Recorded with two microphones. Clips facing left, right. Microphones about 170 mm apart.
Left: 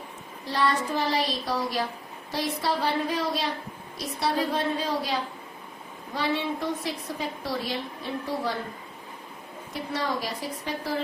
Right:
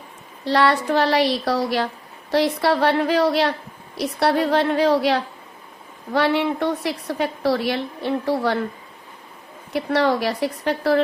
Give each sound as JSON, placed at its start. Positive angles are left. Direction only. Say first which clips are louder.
{"t": 0.4, "sound": "a woman's voice", "louder": "right 8 dB", "side_deg": -75}
{"t": 9.7, "sound": "a woman's voice", "louder": "right 10 dB", "side_deg": -70}